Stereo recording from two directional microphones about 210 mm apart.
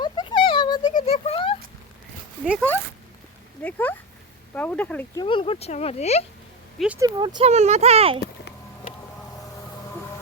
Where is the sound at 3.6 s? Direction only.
10° left (ahead or behind).